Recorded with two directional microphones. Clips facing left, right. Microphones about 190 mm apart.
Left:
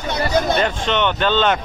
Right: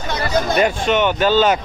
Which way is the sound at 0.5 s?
10° right (ahead or behind).